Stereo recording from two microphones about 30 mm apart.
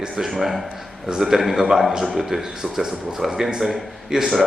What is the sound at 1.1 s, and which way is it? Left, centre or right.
A man's voice, centre.